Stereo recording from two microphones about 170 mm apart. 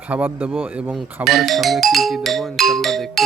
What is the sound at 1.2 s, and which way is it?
Music, centre (ahead or behind).